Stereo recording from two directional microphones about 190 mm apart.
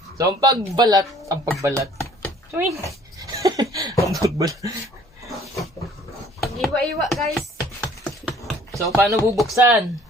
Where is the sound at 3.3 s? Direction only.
20° right (ahead or behind).